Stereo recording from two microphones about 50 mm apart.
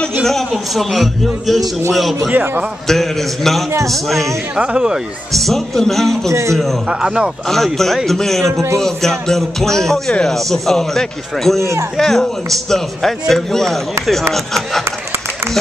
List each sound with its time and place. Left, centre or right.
0.2 s a man's voice: centre
4.6 s speech: centre
5.3 s a man's voice: centre
6.9 s speech: centre
7.4 s a man's voice: centre
8.5 s a man's voice: right
8.8 s a man's voice: centre